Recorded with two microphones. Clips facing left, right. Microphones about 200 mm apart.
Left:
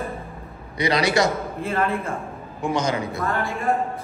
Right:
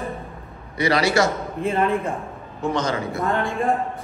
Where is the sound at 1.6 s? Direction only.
Centre (ahead or behind).